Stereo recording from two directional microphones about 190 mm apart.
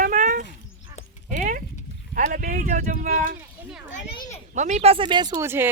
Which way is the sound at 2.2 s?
45° right (ahead or behind).